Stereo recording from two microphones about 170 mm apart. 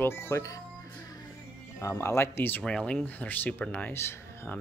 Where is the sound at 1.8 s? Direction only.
15° left (ahead or behind).